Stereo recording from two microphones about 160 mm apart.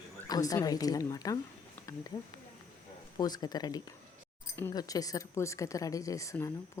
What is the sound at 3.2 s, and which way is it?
Speech, 25° left (ahead or behind).